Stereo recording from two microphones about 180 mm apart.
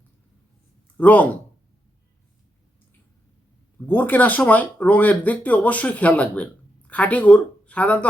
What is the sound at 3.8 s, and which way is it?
A man's voice, 10° left (ahead or behind).